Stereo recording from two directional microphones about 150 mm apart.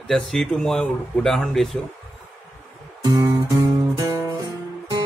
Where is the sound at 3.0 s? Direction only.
20° right (ahead or behind).